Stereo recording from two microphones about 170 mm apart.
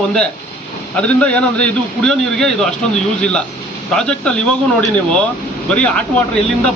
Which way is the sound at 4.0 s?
5° left (ahead or behind).